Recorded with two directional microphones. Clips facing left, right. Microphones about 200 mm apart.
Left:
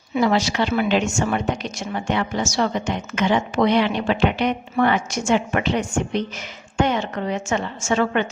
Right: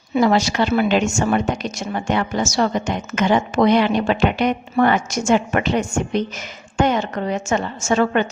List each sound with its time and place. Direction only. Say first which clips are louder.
0.1 s a woman's voice: right 3 dB; 45° right (ahead or behind)